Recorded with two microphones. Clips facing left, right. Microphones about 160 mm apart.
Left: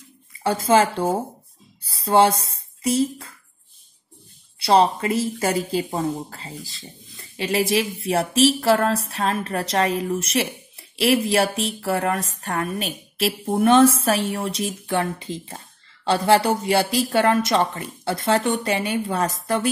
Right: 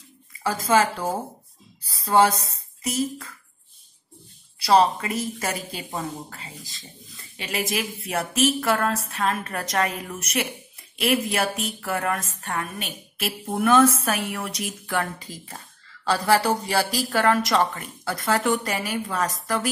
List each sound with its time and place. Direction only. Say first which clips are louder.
0.4 s speech: left 3 dB; 30° left (ahead or behind)
4.6 s speech: left 1 dB; 30° left (ahead or behind)